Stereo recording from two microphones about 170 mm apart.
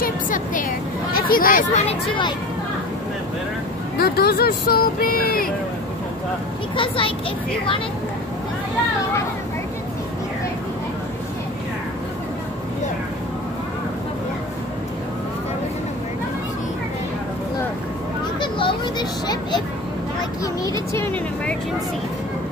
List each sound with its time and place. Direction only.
0.0 s a sound: 50° left (ahead or behind)
1.9 s speech: 30° left (ahead or behind)
4.0 s speech: 65° left (ahead or behind)
6.8 s a child's voice: 30° left (ahead or behind)
18.4 s a sound: 30° left (ahead or behind)
20.9 s speech: 10° left (ahead or behind)